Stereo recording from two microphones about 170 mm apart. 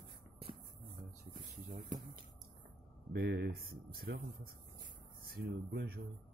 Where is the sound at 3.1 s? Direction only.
75° right (ahead or behind).